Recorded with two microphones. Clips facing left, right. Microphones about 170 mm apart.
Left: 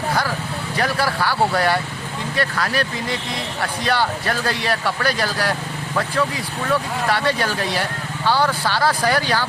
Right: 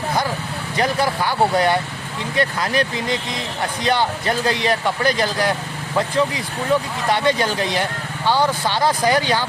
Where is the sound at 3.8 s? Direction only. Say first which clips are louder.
Right 2 dB; 20° right (ahead or behind).